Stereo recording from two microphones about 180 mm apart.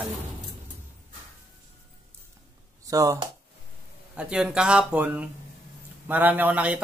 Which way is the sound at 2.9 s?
20° right (ahead or behind).